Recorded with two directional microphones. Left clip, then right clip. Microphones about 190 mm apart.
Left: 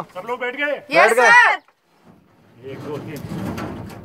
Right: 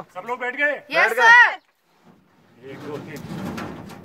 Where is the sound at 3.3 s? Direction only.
50° right (ahead or behind).